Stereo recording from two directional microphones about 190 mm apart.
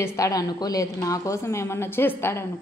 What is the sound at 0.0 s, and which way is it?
A woman's voice, 15° left (ahead or behind).